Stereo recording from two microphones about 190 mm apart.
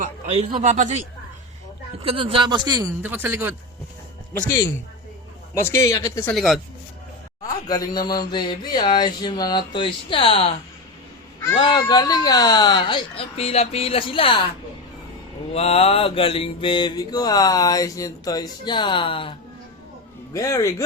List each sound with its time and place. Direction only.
0.3 s speech: 35° right (ahead or behind)
2.0 s speech: 30° right (ahead or behind); by 3.5 s 10° right (ahead or behind)
4.4 s speech: 15° left (ahead or behind)
6.3 s speech: centre (ahead or behind)
7.7 s mantra: 20° left (ahead or behind)
11.5 s mantra: 25° left (ahead or behind)
15.5 s mantra: 35° left (ahead or behind)
20.3 s speech: 15° left (ahead or behind)